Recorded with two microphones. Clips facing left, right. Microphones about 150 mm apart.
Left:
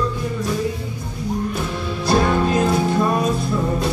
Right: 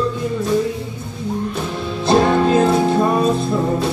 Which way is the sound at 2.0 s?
25° right (ahead or behind).